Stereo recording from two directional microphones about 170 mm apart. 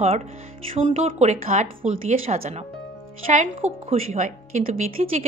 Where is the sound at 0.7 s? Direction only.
40° right (ahead or behind).